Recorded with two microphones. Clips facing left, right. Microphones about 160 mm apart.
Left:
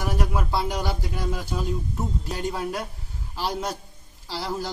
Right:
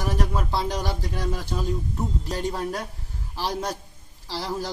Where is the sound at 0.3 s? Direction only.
10° left (ahead or behind).